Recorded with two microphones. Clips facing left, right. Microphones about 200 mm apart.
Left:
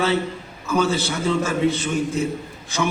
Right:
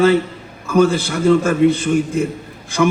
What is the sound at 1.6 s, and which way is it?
Speech, 55° right (ahead or behind).